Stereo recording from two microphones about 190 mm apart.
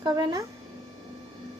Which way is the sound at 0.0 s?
20° right (ahead or behind).